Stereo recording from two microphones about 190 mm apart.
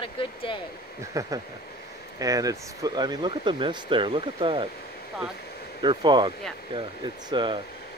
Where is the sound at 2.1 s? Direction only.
20° right (ahead or behind).